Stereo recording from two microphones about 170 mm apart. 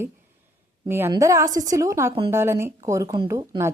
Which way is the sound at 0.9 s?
15° right (ahead or behind).